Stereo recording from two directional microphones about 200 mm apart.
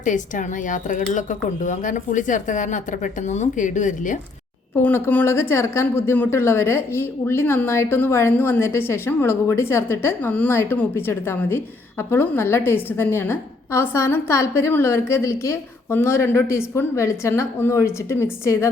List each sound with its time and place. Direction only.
0.0 s speech: 40° left (ahead or behind)
4.8 s speech: 10° left (ahead or behind)